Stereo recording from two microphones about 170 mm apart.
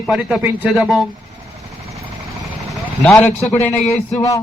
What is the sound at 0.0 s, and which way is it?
Speech, 5° right (ahead or behind).